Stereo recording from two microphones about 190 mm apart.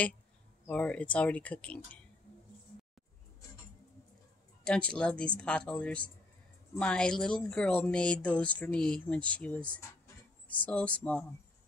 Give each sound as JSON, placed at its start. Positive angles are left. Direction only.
{"t": 0.7, "sound": "speech", "side_deg": 5}
{"t": 4.6, "sound": "speech", "side_deg": 5}